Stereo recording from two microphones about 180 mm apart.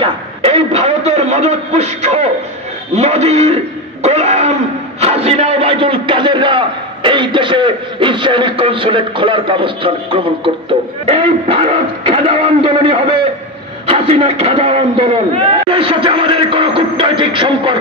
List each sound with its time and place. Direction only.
0.0 s a man's voice: 35° right (ahead or behind)